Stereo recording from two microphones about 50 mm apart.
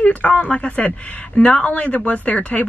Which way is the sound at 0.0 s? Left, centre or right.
Left.